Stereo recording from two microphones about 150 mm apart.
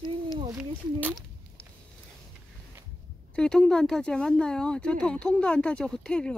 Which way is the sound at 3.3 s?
5° left (ahead or behind).